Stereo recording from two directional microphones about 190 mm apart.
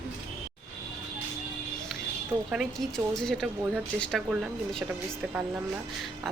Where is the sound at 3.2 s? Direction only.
5° left (ahead or behind).